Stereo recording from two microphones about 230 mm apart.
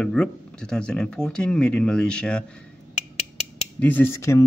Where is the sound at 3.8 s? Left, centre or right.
Centre.